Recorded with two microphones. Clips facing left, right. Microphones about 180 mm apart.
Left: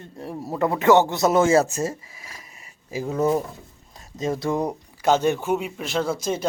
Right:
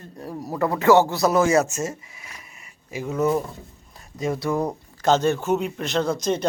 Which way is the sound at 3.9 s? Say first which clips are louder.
Even; 25° left (ahead or behind).